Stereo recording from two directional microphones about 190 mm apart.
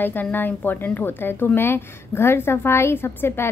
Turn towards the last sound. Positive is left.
turn(degrees=10)  # may be behind; listen again after turning